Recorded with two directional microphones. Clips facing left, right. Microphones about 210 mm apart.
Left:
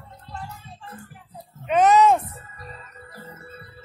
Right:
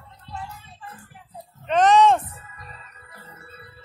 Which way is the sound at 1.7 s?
10° left (ahead or behind).